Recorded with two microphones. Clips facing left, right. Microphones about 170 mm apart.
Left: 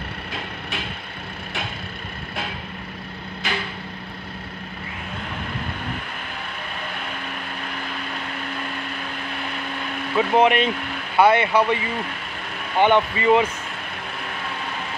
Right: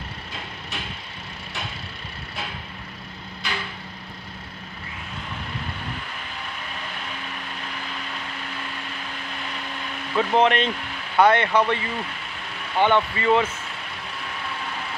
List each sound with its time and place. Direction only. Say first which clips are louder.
10.1 s speech: left 2 dB; 10° left (ahead or behind)